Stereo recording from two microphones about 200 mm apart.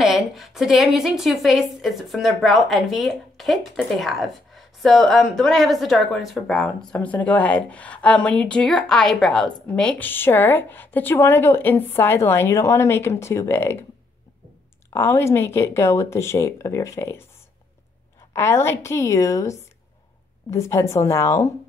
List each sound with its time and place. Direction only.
0.0 s a woman's voice: centre (ahead or behind)
14.9 s a woman's voice: 10° left (ahead or behind)
18.3 s a woman's voice: 15° left (ahead or behind)